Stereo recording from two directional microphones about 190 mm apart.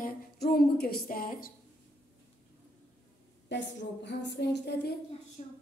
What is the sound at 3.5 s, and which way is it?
A woman's voice, 65° left (ahead or behind).